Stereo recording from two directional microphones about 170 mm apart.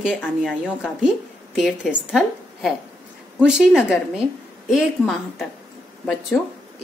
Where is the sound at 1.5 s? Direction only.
5° left (ahead or behind).